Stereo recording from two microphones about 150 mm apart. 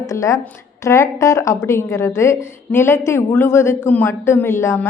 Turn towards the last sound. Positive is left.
turn(degrees=20)  # may be behind; listen again after turning